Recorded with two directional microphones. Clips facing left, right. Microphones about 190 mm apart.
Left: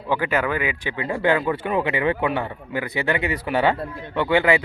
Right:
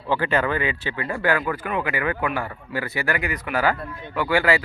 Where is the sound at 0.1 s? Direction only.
10° left (ahead or behind).